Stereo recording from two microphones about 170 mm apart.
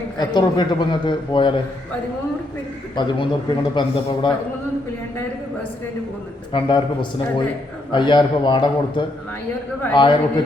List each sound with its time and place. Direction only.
0.2 s a man's voice: 25° left (ahead or behind)
2.9 s a man's voice: 25° left (ahead or behind)
6.5 s a man's voice: 25° left (ahead or behind)